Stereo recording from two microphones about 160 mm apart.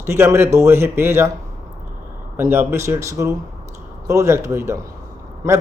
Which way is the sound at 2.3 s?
15° right (ahead or behind).